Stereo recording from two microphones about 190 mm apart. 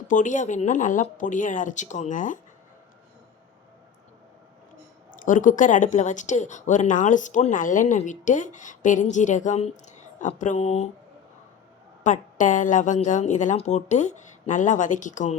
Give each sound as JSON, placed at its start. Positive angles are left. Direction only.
{"t": 0.1, "sound": "speech", "side_deg": 40}
{"t": 5.1, "sound": "speech", "side_deg": 45}
{"t": 12.0, "sound": "speech", "side_deg": 40}